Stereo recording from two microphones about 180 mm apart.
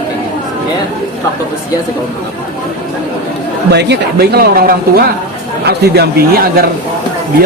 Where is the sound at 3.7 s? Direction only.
65° right (ahead or behind).